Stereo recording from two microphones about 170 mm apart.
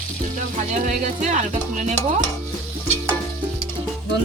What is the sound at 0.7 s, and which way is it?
Speech, 45° right (ahead or behind).